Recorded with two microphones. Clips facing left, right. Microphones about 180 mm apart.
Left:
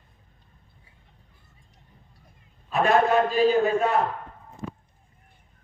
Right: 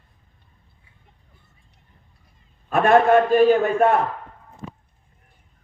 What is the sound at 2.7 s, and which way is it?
A man's voice, 55° right (ahead or behind).